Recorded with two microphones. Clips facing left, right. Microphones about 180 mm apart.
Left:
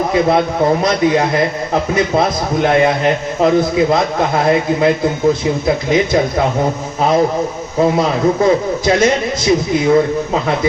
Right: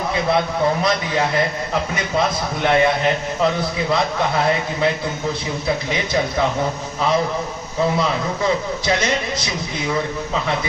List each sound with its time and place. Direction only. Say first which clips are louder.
0.1 s a man's voice: left 4 dB; 45° left (ahead or behind)